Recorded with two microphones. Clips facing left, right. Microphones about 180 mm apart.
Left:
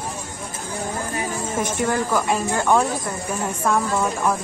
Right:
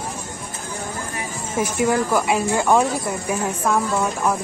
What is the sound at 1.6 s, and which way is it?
Speech, 10° right (ahead or behind).